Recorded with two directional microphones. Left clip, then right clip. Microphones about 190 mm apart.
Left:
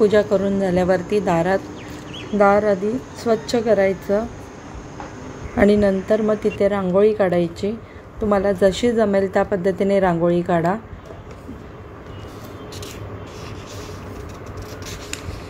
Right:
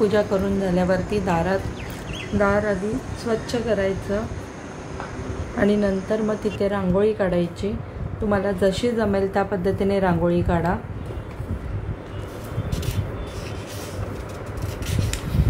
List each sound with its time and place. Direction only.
0.0 s a woman's voice: 25° left (ahead or behind)
5.6 s a woman's voice: 35° left (ahead or behind)